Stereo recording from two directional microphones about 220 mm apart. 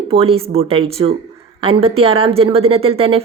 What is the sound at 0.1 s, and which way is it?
A woman's voice, 25° right (ahead or behind).